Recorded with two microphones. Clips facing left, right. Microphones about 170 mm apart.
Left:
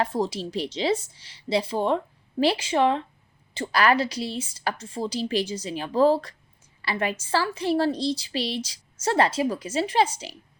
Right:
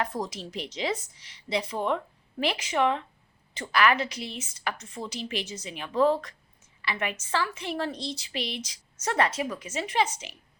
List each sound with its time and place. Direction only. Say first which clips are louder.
0.0 s a woman's voice: left 6 dB; 30° left (ahead or behind)